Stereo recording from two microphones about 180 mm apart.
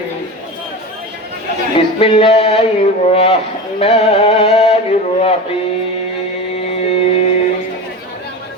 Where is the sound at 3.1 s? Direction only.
35° left (ahead or behind).